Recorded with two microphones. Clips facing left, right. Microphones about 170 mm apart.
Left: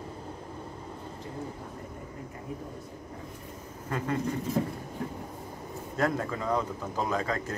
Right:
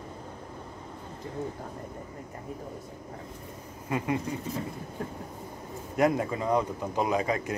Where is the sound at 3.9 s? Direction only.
10° right (ahead or behind).